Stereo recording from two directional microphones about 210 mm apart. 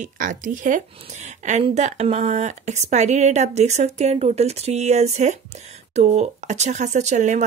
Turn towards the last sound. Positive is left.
turn(degrees=-35)  # may be behind; listen again after turning